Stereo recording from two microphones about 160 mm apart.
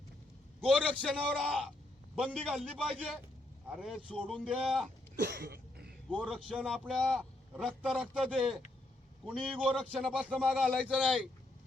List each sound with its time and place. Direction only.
0.6 s a man's voice: 5° left (ahead or behind)
5.2 s a sound: 75° right (ahead or behind)
6.1 s a man's voice: 5° left (ahead or behind)
10.9 s a man's voice: 5° left (ahead or behind)